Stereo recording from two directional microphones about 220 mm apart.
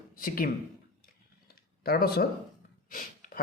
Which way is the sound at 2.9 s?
40° left (ahead or behind).